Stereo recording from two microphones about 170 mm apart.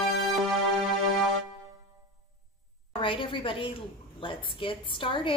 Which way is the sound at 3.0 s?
30° left (ahead or behind).